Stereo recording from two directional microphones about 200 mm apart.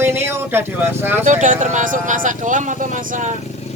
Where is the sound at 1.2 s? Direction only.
40° right (ahead or behind).